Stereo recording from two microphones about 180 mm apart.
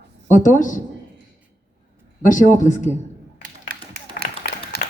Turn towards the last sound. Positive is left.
turn(degrees=-60)  # may be behind; listen again after turning